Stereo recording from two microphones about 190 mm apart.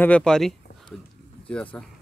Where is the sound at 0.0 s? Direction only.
5° left (ahead or behind).